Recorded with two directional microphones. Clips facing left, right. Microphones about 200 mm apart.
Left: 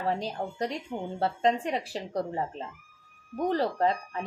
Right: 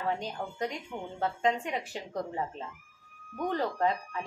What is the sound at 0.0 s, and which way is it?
A woman's voice, 35° left (ahead or behind).